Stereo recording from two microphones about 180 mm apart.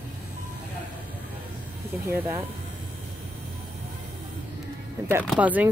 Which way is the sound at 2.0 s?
15° right (ahead or behind).